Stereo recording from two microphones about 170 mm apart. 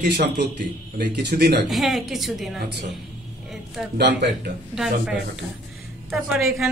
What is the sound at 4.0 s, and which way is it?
Speech, 85° right.